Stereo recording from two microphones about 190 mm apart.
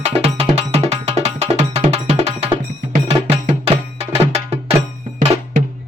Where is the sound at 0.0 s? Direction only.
30° right (ahead or behind).